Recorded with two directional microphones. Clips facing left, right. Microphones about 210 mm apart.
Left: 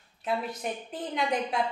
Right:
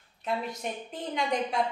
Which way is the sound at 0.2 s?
5° left (ahead or behind).